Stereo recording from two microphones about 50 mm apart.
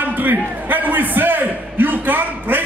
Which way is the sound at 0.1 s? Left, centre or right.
Right.